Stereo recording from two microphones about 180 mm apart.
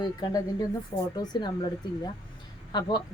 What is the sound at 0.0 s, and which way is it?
Speech, 20° left (ahead or behind).